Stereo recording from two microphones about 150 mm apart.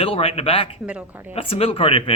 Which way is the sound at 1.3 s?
40° left (ahead or behind).